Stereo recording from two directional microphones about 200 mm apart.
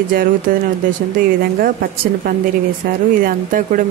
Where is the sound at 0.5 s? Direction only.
45° right (ahead or behind).